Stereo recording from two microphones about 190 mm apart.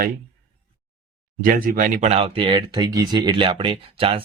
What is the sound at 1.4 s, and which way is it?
Speech, 50° right (ahead or behind).